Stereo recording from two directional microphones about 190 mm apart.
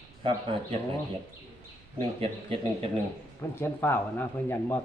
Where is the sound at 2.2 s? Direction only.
30° right (ahead or behind).